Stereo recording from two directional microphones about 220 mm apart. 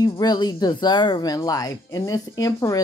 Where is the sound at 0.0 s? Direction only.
20° left (ahead or behind).